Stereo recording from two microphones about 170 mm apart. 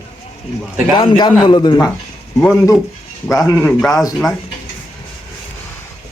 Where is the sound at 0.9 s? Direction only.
30° left (ahead or behind).